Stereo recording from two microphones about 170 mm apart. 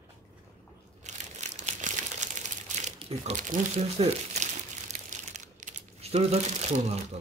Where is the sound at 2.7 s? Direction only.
40° right (ahead or behind).